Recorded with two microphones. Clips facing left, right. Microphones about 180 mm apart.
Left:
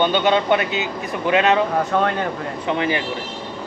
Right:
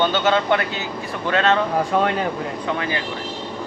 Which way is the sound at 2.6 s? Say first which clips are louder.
Left 5 dB; 20° left (ahead or behind).